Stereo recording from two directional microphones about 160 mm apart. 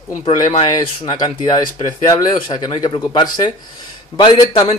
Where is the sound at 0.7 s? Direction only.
25° left (ahead or behind).